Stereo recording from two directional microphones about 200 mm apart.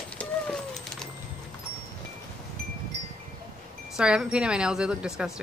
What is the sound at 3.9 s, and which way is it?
A woman's voice, 5° right (ahead or behind).